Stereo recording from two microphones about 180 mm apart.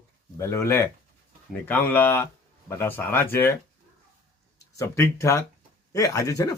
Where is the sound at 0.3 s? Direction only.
15° left (ahead or behind).